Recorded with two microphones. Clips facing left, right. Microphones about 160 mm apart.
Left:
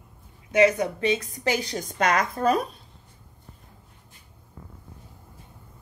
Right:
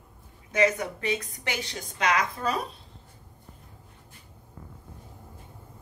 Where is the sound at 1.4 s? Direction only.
40° left (ahead or behind).